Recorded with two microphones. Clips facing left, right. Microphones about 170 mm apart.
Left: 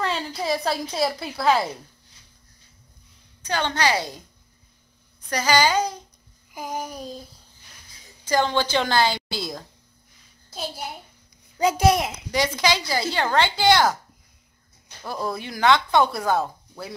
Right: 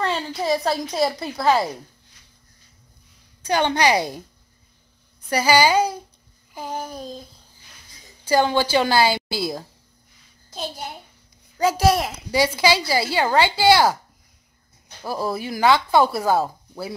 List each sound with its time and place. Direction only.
0.0 s speech: centre (ahead or behind)
3.4 s speech: 15° right (ahead or behind)
5.3 s speech: 10° right (ahead or behind)
6.5 s a sound: 10° left (ahead or behind)
8.3 s speech: 10° right (ahead or behind)
11.5 s a child's voice: 20° left (ahead or behind)
12.3 s speech: 5° right (ahead or behind)
15.2 s speech: 5° right (ahead or behind)